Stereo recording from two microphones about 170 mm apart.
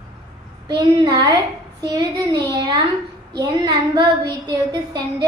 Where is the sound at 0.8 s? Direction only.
25° right (ahead or behind).